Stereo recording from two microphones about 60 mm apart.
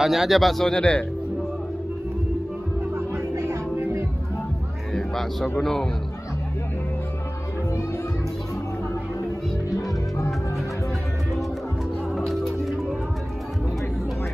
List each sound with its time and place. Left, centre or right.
0.0 s speech: centre
2.9 s music: right
4.9 s music: centre
5.6 s speech: centre
9.8 s music: left
12.2 s music: centre